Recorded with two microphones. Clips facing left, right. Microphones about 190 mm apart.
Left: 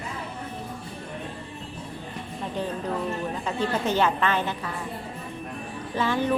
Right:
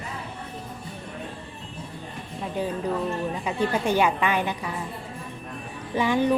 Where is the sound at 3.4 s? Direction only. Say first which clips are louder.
Right 1 dB; 10° right (ahead or behind).